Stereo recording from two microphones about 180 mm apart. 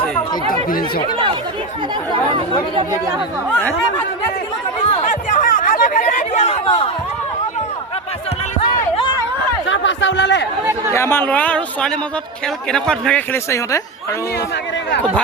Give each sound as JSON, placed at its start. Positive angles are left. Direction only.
{"t": 0.7, "sound": "speech", "side_deg": 55}
{"t": 3.6, "sound": "speech", "side_deg": 10}
{"t": 4.9, "sound": "chatter", "side_deg": 35}
{"t": 9.6, "sound": "a sound", "side_deg": 90}
{"t": 10.9, "sound": "speech", "side_deg": 15}